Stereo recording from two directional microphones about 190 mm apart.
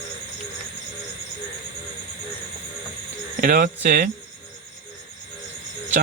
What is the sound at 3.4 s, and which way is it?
Speech, 50° right (ahead or behind).